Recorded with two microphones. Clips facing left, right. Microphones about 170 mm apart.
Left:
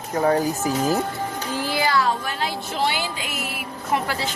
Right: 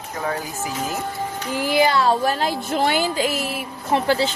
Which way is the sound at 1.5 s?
15° right (ahead or behind).